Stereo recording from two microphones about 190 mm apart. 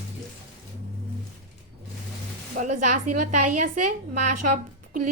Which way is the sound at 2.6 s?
40° right (ahead or behind).